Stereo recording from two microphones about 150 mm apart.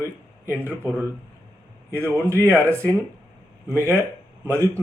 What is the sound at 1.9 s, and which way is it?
Speech, 15° right (ahead or behind).